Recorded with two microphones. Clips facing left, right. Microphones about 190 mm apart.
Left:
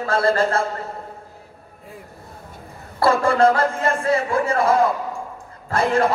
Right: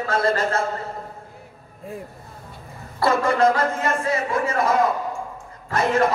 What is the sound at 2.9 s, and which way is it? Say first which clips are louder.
A man's voice: left 2 dB; 30° left (ahead or behind).